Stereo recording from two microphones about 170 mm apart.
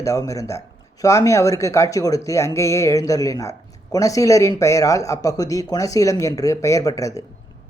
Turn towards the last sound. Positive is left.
turn(degrees=20)  # may be behind; listen again after turning